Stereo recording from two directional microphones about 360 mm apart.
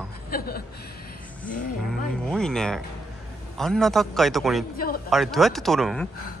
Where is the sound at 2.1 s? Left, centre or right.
Centre.